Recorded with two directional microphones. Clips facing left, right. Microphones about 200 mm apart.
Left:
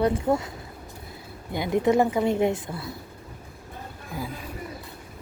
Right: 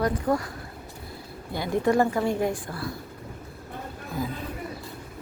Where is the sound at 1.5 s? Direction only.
20° left (ahead or behind).